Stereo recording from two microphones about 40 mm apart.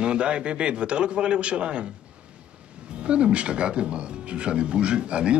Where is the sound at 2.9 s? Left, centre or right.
Right.